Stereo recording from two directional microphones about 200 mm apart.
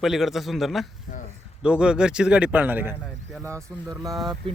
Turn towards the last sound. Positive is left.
turn(degrees=-20)  # may be behind; listen again after turning